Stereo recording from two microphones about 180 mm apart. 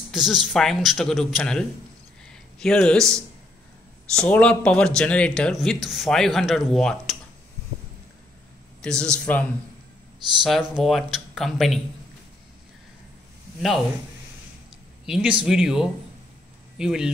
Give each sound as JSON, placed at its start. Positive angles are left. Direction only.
{"t": 0.1, "sound": "speech", "side_deg": 0}
{"t": 2.2, "sound": "a sound", "side_deg": 5}
{"t": 4.1, "sound": "speech", "side_deg": 5}
{"t": 8.8, "sound": "a man's voice", "side_deg": 5}
{"t": 15.0, "sound": "speech", "side_deg": -5}